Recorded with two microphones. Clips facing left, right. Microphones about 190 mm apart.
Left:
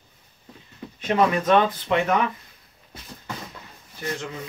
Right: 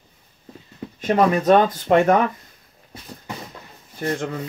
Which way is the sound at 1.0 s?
45° right (ahead or behind).